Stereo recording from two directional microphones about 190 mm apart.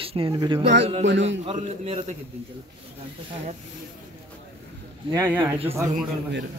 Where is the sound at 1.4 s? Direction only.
30° right (ahead or behind).